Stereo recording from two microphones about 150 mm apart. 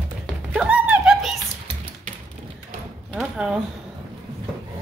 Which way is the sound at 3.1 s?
5° right (ahead or behind).